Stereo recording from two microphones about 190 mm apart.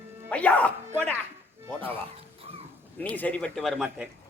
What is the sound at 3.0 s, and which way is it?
A man's voice, 10° left (ahead or behind).